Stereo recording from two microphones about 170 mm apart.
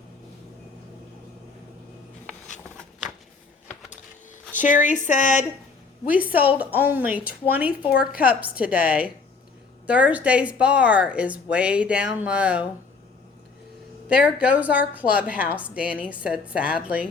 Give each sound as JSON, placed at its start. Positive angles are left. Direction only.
{"t": 4.6, "sound": "speech", "side_deg": 50}
{"t": 6.1, "sound": "speech", "side_deg": -10}
{"t": 14.1, "sound": "speech", "side_deg": -5}